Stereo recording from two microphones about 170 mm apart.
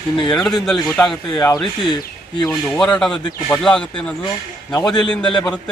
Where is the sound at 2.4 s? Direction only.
10° left (ahead or behind).